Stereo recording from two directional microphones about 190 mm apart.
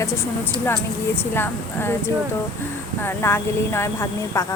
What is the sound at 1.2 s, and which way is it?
Speech, 10° left (ahead or behind).